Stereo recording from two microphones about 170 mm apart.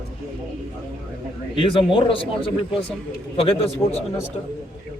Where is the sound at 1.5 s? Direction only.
30° left (ahead or behind).